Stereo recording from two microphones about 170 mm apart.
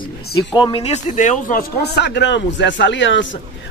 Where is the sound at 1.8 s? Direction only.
80° left.